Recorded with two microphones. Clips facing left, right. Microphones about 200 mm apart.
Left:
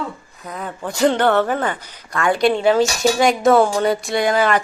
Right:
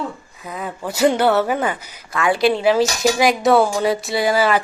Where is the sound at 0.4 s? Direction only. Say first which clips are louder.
Right 1 dB; 5° right (ahead or behind).